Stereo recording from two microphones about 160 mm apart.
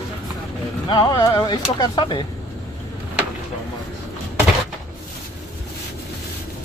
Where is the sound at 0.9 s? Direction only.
30° left (ahead or behind).